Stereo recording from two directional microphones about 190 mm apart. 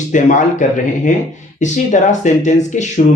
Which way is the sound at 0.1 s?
40° left (ahead or behind).